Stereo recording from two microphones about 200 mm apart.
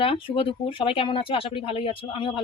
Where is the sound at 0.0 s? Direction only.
25° left (ahead or behind).